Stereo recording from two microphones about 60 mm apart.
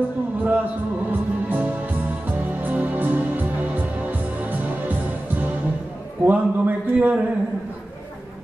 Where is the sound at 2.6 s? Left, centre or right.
Right.